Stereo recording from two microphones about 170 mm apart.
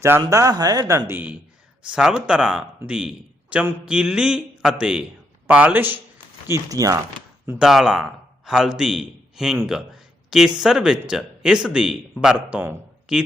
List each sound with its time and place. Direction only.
0.2 s a man's voice: 20° right (ahead or behind)
7.6 s a man's voice: centre (ahead or behind)